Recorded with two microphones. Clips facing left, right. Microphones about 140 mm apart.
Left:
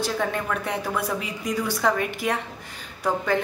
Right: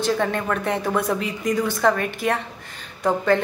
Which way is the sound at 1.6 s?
10° left (ahead or behind).